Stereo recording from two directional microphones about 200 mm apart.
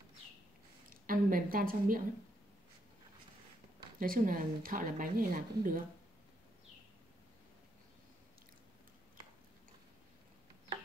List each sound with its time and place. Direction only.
0.8 s a woman's voice: 45° right (ahead or behind)
4.0 s speech: 45° right (ahead or behind)